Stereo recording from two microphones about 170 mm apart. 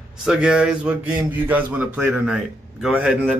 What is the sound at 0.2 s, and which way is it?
Speech, 5° right (ahead or behind).